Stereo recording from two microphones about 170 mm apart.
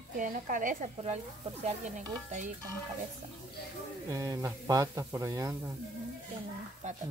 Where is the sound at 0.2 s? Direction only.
50° right (ahead or behind).